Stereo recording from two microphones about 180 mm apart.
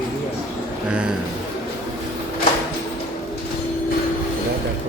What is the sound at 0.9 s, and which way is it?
Bird, 5° right (ahead or behind).